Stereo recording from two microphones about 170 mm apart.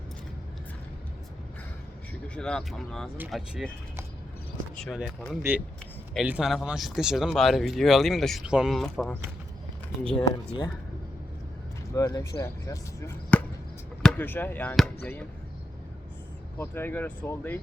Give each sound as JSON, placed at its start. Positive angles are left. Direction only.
{"t": 2.2, "sound": "speech", "side_deg": 5}
{"t": 4.8, "sound": "speech", "side_deg": -5}
{"t": 10.2, "sound": "speech", "side_deg": 30}
{"t": 11.9, "sound": "speech", "side_deg": 20}
{"t": 16.6, "sound": "speech", "side_deg": 10}